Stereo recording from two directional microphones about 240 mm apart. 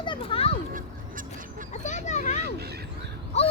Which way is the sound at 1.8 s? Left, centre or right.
Left.